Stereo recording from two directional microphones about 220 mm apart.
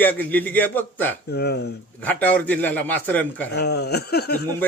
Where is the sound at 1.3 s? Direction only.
50° left (ahead or behind).